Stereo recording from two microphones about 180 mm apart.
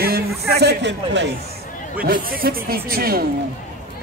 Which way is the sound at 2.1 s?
55° right (ahead or behind).